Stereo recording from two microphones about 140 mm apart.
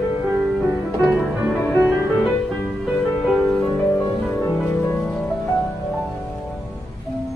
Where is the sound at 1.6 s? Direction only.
10° left (ahead or behind).